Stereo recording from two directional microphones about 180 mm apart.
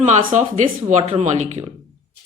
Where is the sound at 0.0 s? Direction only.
40° right (ahead or behind).